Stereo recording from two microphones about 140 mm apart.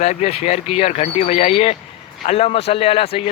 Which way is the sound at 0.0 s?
55° left (ahead or behind).